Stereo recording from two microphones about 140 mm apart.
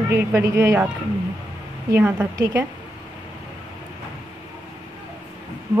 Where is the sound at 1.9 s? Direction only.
15° right (ahead or behind).